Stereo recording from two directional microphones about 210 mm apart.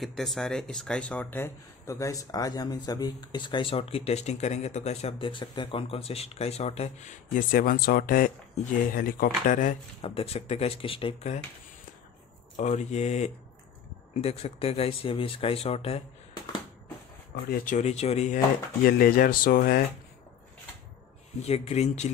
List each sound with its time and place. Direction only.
0.0 s speech: centre (ahead or behind); by 9.8 s 40° left (ahead or behind)
10.0 s speech: 25° left (ahead or behind)
12.5 s speech: 35° left (ahead or behind)
17.5 s speech: 35° left (ahead or behind)
18.9 s speech: 45° left (ahead or behind)
21.4 s speech: 30° left (ahead or behind)